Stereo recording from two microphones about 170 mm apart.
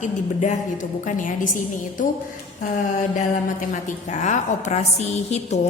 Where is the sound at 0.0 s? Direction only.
50° left (ahead or behind).